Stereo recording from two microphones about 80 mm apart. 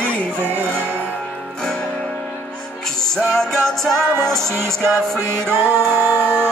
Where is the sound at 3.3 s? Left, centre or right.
Centre.